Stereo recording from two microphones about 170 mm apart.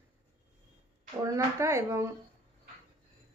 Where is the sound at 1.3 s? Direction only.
15° right (ahead or behind).